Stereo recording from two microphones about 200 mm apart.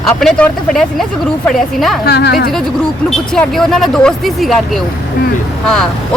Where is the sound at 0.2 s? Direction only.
5° left (ahead or behind).